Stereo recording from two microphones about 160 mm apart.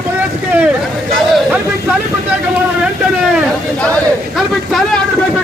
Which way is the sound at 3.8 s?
5° left (ahead or behind).